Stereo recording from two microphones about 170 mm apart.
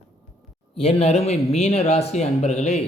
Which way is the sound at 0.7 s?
35° left (ahead or behind).